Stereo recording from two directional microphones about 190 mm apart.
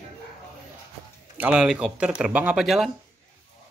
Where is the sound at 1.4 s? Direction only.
5° right (ahead or behind).